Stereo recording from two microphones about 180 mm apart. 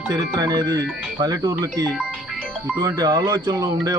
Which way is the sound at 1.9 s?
5° left (ahead or behind).